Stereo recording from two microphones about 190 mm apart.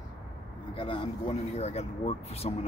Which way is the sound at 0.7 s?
25° left (ahead or behind).